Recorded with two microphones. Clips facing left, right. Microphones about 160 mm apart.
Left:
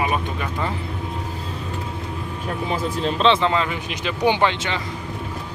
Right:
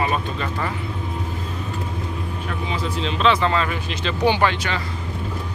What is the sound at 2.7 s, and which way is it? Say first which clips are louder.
Speech: left 3 dB; 50° left (ahead or behind).